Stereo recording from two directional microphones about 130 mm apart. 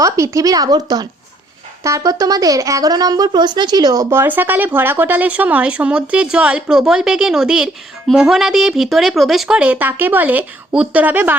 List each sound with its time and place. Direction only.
0.0 s speech: 25° right (ahead or behind)
4.1 s speech: 15° right (ahead or behind)